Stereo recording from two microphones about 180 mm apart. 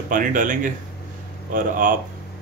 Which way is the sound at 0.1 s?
50° right (ahead or behind).